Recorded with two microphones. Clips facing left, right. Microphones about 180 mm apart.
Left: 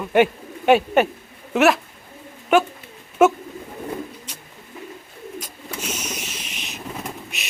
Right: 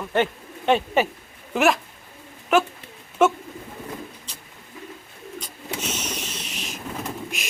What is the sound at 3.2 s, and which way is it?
Bird, 5° left (ahead or behind).